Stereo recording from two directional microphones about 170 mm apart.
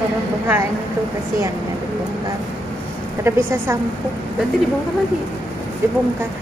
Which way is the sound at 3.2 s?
15° right (ahead or behind).